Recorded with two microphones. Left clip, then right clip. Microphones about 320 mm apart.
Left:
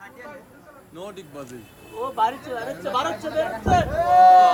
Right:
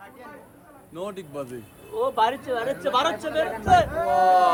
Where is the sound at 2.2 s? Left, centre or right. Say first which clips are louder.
Left 2 dB; right.